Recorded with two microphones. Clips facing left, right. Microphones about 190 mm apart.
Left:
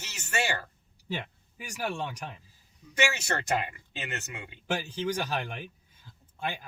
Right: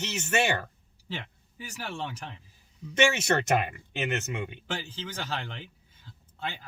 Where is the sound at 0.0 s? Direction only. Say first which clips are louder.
Right 5 dB; 20° right (ahead or behind).